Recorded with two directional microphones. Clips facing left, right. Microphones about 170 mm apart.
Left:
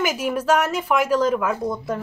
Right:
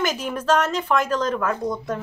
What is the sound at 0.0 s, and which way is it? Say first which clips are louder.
A woman's voice: left 2 dB; 10° left (ahead or behind).